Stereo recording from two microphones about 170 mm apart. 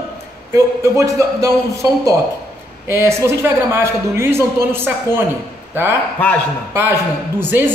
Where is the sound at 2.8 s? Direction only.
15° right (ahead or behind).